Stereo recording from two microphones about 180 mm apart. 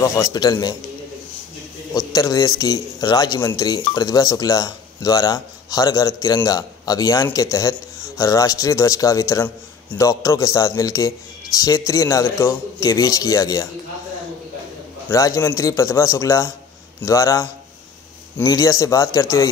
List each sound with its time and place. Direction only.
0.0 s speech: 20° left (ahead or behind)
2.0 s a man's voice: 20° left (ahead or behind)
15.0 s a man's voice: 20° left (ahead or behind)